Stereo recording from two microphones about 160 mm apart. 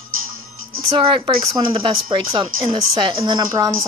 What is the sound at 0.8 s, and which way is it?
Speech, 30° right (ahead or behind).